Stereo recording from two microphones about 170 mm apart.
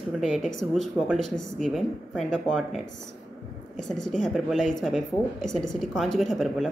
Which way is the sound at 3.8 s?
Centre (ahead or behind).